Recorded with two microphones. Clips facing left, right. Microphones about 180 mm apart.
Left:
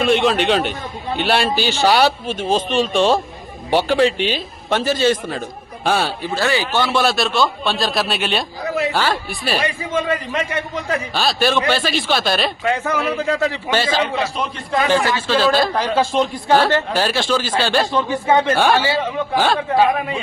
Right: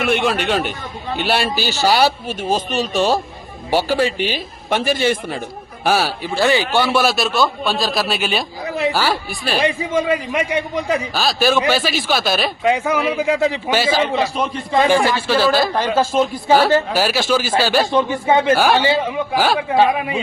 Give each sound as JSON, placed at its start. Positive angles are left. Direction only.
{"t": 0.0, "sound": "a man's voice", "side_deg": -5}
{"t": 2.6, "sound": "speech", "side_deg": -45}
{"t": 2.9, "sound": "a man's voice", "side_deg": -5}
{"t": 6.3, "sound": "a man's voice", "side_deg": -15}
{"t": 11.2, "sound": "a man's voice", "side_deg": 0}
{"t": 12.6, "sound": "a man's voice", "side_deg": -15}
{"t": 17.9, "sound": "a man's voice", "side_deg": -15}
{"t": 19.3, "sound": "a man's voice", "side_deg": -5}